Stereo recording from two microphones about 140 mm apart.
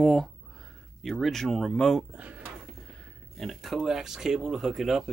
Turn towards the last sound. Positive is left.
turn(degrees=0)  # may be behind; listen again after turning